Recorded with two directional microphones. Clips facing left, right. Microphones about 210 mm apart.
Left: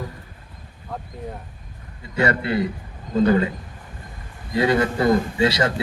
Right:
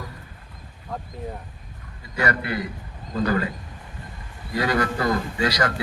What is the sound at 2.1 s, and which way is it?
A man's voice, 25° left (ahead or behind).